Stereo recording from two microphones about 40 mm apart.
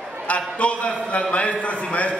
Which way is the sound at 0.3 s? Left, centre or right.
Left.